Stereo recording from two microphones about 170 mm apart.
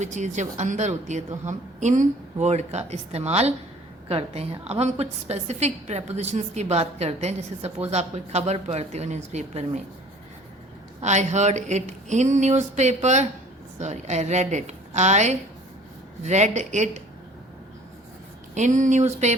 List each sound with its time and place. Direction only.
0.0 s a woman's voice: 45° right (ahead or behind)
4.7 s a woman's voice: 40° right (ahead or behind)
11.0 s a woman's voice: 45° right (ahead or behind)
18.5 s a woman's voice: 45° right (ahead or behind)